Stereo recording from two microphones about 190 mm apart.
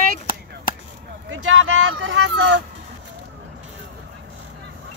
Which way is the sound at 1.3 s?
90° right.